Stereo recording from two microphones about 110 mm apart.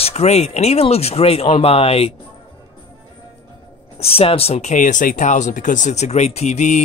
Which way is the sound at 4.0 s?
65° left (ahead or behind).